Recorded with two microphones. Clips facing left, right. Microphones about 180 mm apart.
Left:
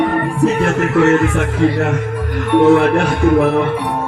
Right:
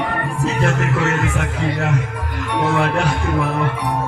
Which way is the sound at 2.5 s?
55° left (ahead or behind).